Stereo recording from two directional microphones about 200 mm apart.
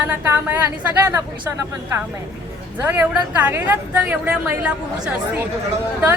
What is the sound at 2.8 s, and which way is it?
A woman's voice, 10° right (ahead or behind).